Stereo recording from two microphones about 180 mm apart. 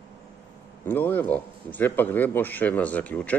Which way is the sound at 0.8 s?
10° left (ahead or behind).